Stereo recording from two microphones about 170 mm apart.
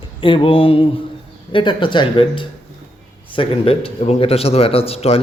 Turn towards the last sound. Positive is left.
turn(degrees=35)  # may be behind; listen again after turning